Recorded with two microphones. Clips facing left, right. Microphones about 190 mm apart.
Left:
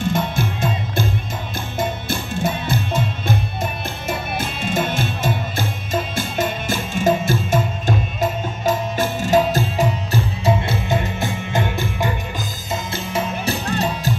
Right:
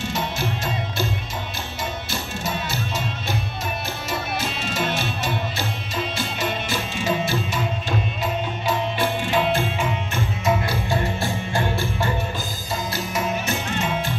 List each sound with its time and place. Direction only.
0.1 s music: 55° left (ahead or behind); by 12.1 s 20° left (ahead or behind)
12.9 s music: 30° left (ahead or behind)